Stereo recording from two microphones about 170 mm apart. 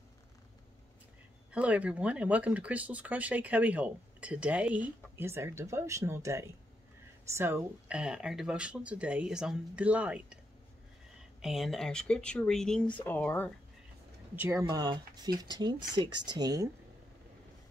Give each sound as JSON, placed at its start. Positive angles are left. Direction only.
{"t": 1.5, "sound": "speech", "side_deg": -5}
{"t": 11.4, "sound": "speech", "side_deg": 0}
{"t": 14.3, "sound": "speech", "side_deg": -15}